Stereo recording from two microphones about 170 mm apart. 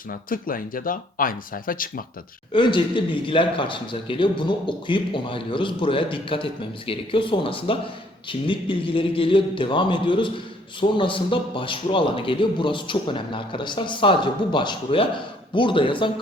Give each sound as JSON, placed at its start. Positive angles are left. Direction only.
{"t": 0.1, "sound": "speech", "side_deg": 55}
{"t": 2.5, "sound": "a man's voice", "side_deg": 30}